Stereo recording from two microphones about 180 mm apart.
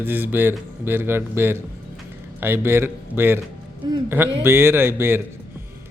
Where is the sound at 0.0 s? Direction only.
10° right (ahead or behind).